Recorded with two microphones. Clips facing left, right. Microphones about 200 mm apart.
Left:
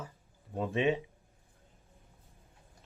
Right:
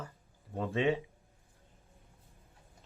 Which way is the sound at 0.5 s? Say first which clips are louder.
Left 1 dB; 15° left (ahead or behind).